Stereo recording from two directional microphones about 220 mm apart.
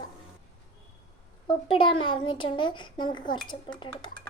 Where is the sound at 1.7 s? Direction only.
25° left (ahead or behind).